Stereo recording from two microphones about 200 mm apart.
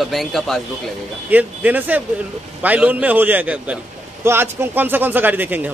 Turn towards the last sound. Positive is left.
turn(degrees=-10)  # may be behind; listen again after turning